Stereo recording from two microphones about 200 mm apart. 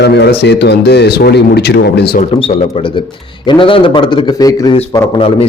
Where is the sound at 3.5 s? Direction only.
25° left (ahead or behind).